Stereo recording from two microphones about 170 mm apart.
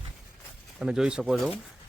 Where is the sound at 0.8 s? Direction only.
5° right (ahead or behind).